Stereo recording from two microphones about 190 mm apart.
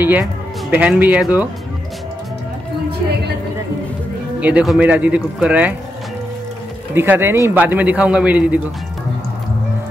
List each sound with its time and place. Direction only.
0.0 s speech: 10° right (ahead or behind)
4.4 s a man's voice: 5° right (ahead or behind)
7.0 s a man's voice: 10° right (ahead or behind)